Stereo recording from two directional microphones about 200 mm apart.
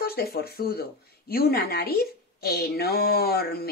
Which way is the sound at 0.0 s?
50° left (ahead or behind).